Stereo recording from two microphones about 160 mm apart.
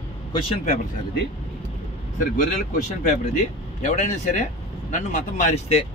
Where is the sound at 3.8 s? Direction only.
45° left (ahead or behind).